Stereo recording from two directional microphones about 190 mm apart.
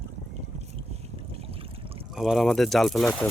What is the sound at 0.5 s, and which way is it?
Boat, 35° right (ahead or behind).